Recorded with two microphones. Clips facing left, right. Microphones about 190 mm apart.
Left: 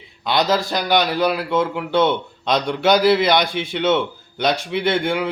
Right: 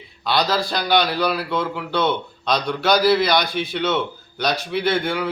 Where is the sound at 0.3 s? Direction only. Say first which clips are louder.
Left 2 dB; 20° left (ahead or behind).